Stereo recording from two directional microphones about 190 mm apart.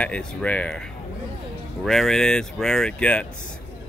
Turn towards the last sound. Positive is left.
turn(degrees=5)  # may be behind; listen again after turning